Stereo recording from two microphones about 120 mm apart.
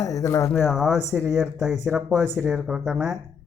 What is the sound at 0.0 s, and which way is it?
Speech, 30° left (ahead or behind).